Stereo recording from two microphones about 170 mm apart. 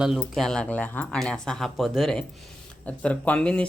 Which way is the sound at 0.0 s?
Centre (ahead or behind).